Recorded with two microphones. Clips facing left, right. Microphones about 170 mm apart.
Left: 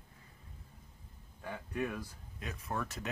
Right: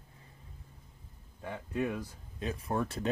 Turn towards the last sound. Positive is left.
turn(degrees=-30)  # may be behind; listen again after turning